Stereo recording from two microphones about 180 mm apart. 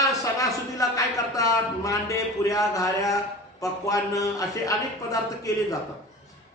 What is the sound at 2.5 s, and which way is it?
A man's voice, 20° left (ahead or behind).